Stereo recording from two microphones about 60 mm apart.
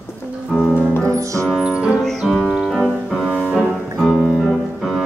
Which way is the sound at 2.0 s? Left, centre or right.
Centre.